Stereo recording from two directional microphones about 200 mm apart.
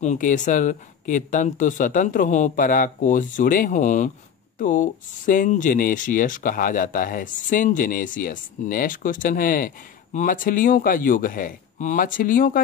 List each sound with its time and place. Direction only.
0.0 s speech: 40° left (ahead or behind)